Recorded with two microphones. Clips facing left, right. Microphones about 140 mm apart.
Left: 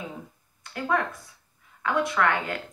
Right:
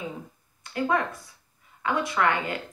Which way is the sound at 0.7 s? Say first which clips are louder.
Right 1 dB; centre (ahead or behind).